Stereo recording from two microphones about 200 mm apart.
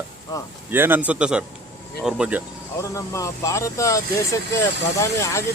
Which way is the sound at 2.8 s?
15° left (ahead or behind).